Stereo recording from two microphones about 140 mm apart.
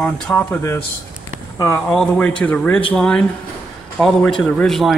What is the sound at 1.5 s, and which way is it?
Speech, 20° left (ahead or behind).